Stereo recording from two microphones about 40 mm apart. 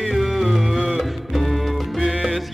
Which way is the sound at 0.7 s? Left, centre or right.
Centre.